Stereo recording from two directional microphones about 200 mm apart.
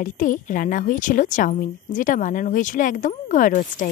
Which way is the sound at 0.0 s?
40° left (ahead or behind).